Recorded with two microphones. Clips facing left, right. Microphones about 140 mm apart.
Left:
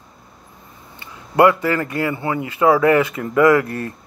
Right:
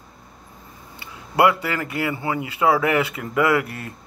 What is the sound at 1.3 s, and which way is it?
Speech, 30° left (ahead or behind).